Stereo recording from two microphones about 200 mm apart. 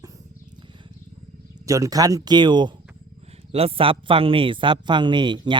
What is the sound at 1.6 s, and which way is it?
Speech, 15° right (ahead or behind).